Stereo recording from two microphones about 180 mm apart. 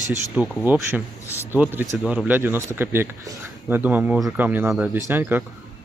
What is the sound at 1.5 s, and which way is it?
Speech, 10° right (ahead or behind).